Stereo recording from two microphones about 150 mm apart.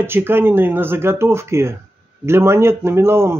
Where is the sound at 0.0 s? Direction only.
15° right (ahead or behind).